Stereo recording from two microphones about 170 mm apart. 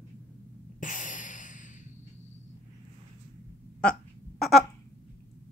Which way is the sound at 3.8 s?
5° left (ahead or behind).